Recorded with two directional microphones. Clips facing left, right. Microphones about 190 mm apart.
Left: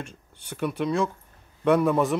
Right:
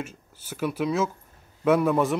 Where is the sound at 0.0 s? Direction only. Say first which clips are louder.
Right 3 dB; 5° right (ahead or behind).